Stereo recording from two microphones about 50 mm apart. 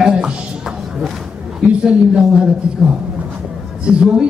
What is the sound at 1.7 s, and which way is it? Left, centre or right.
Speech, centre.